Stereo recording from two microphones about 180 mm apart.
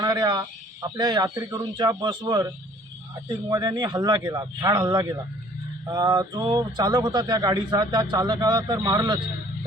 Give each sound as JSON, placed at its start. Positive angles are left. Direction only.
{"t": 0.0, "sound": "speech", "side_deg": -25}
{"t": 3.5, "sound": "speech", "side_deg": -20}